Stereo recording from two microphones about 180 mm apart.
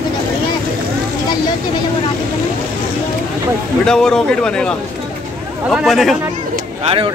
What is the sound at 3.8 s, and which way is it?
A man's voice, 5° left (ahead or behind).